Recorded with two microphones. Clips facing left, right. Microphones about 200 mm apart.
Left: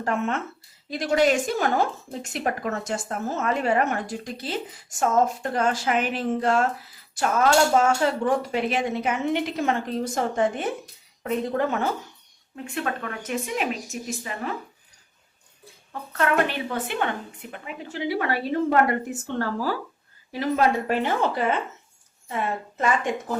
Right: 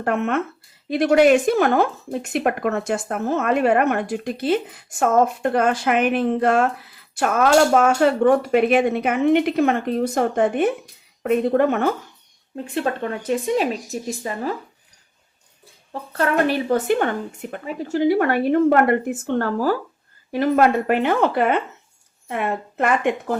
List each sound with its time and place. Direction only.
0.0 s speech: 60° right (ahead or behind)
12.6 s speech: 30° right (ahead or behind)
15.9 s speech: 35° right (ahead or behind); by 23.1 s 60° right (ahead or behind)